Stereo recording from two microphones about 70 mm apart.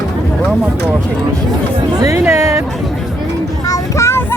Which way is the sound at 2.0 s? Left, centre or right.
Right.